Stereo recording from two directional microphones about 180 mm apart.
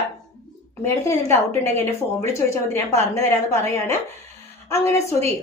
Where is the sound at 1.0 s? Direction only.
15° left (ahead or behind).